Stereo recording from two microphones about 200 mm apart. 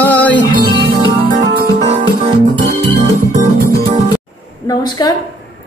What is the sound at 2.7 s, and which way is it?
Music, 40° right (ahead or behind).